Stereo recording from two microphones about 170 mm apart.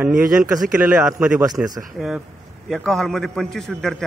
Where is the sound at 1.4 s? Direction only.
20° right (ahead or behind).